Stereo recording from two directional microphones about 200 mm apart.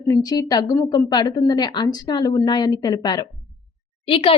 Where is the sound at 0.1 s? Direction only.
20° left (ahead or behind).